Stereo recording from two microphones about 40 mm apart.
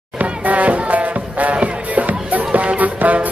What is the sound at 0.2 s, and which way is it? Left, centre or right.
Music, right.